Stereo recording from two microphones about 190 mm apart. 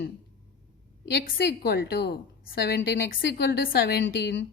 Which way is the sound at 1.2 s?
55° left (ahead or behind).